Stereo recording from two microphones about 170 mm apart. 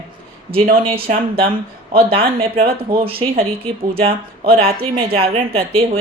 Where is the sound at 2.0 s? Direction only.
35° right (ahead or behind).